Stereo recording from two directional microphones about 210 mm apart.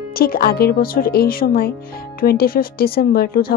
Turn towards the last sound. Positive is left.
turn(degrees=45)  # may be behind; listen again after turning